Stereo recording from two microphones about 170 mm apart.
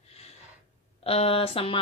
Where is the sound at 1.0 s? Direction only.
35° left (ahead or behind).